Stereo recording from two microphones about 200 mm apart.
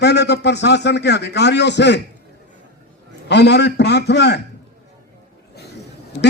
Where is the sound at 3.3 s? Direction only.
55° left (ahead or behind).